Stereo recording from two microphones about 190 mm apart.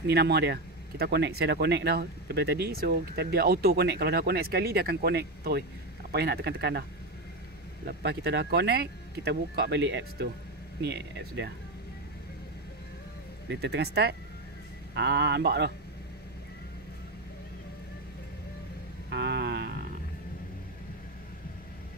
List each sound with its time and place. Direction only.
0.0 s speech: 60° right (ahead or behind)
7.8 s speech: 60° right (ahead or behind)
13.5 s speech: 60° right (ahead or behind)
19.0 s a sound: 65° right (ahead or behind)